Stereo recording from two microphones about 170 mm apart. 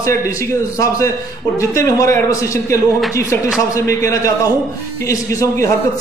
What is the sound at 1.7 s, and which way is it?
A man's voice, 15° left (ahead or behind).